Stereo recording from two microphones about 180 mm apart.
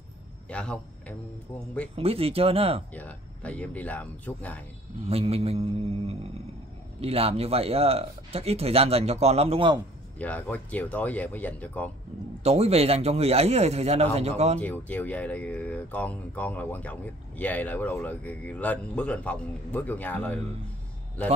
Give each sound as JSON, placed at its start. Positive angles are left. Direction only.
{"t": 0.5, "sound": "a man's voice", "side_deg": 5}
{"t": 2.0, "sound": "speech", "side_deg": -30}
{"t": 2.9, "sound": "speech", "side_deg": 10}
{"t": 5.0, "sound": "speech", "side_deg": -35}
{"t": 10.1, "sound": "speech", "side_deg": 10}
{"t": 12.4, "sound": "speech", "side_deg": -35}
{"t": 14.6, "sound": "speech", "side_deg": 10}